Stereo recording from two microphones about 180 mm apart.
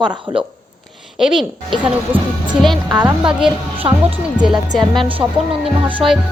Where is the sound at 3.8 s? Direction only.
30° right (ahead or behind).